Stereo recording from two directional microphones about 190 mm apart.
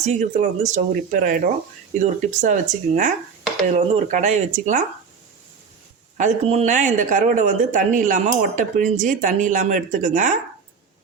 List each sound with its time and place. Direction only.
0.0 s speech: 40° right (ahead or behind)
6.1 s speech: 35° right (ahead or behind)